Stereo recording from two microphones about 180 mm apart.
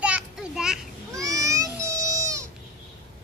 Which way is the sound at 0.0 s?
5° right (ahead or behind).